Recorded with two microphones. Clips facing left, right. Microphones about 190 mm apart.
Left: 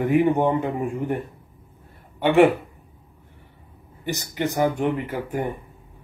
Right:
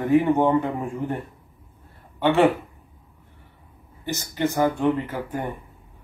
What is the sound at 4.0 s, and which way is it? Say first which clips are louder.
A man's voice: right 1 dB; 15° left (ahead or behind).